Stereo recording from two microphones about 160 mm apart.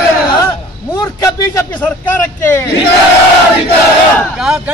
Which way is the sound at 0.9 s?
20° left (ahead or behind).